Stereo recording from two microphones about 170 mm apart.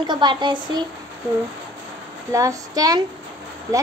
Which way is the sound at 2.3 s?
20° right (ahead or behind).